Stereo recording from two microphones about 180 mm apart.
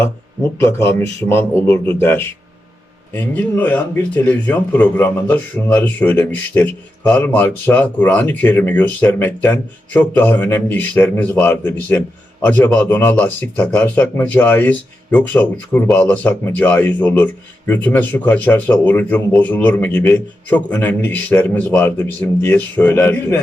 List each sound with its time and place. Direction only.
0.6 s speech: 15° left (ahead or behind)